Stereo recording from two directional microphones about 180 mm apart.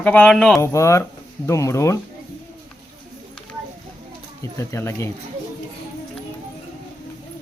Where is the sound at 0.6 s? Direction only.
15° left (ahead or behind).